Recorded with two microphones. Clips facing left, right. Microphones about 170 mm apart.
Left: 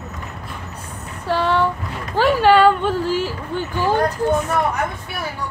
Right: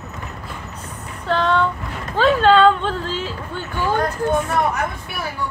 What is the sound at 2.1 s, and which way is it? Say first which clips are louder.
Speech: even; 10° left (ahead or behind).